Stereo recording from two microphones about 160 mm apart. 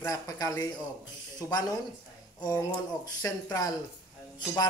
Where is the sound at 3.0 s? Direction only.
20° left (ahead or behind).